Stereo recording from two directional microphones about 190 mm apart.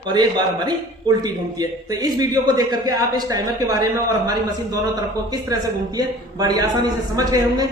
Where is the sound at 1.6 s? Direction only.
20° right (ahead or behind).